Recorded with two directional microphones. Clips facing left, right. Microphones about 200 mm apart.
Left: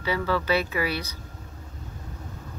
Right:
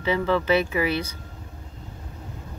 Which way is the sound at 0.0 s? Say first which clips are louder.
Right 3 dB; 20° right (ahead or behind).